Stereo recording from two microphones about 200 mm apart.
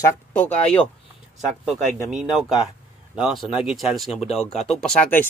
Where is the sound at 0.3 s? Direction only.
5° left (ahead or behind).